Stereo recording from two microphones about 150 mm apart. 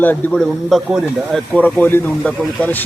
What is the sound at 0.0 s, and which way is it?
Speech, 10° left (ahead or behind).